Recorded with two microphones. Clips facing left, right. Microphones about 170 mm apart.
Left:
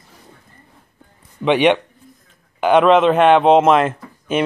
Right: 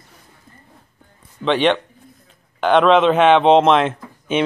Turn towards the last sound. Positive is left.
turn(degrees=5)  # may be behind; listen again after turning